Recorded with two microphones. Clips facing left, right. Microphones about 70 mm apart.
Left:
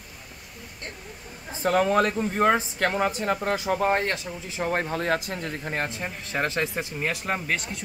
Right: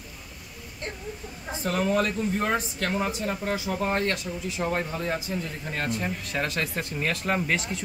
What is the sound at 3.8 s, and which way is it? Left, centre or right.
Speech, left.